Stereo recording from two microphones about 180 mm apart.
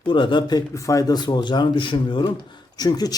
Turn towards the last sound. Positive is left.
turn(degrees=20)  # may be behind; listen again after turning